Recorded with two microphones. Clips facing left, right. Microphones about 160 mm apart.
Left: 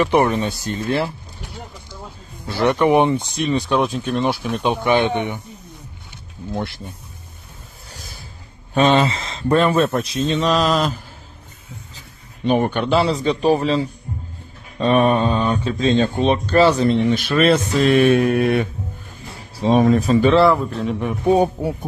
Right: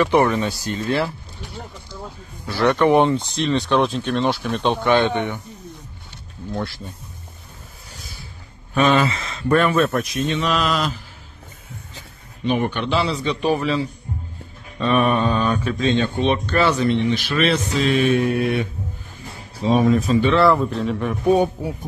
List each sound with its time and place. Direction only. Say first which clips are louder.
0.0 s speech: even; 20° left (ahead or behind)
2.4 s speech: even; 20° left (ahead or behind)
8.7 s speech: left 2 dB; 30° left (ahead or behind)
12.4 s a man's voice: left 3 dB; 45° left (ahead or behind)
19.5 s a sound: left 2 dB; 35° left (ahead or behind)
19.8 s speech: left 3 dB; 40° left (ahead or behind)
20.4 s speech: even; centre (ahead or behind)